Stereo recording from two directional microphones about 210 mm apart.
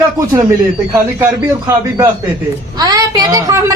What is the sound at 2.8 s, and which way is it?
Speech, 15° right (ahead or behind).